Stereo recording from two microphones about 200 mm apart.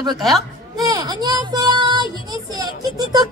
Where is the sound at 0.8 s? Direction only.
20° right (ahead or behind).